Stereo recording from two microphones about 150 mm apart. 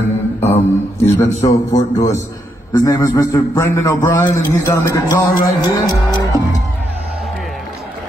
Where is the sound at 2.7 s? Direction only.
20° left (ahead or behind).